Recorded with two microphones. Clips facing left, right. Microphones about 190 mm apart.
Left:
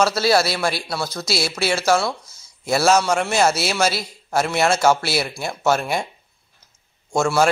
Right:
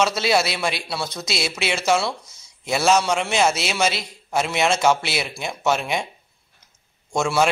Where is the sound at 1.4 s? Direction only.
20° right (ahead or behind).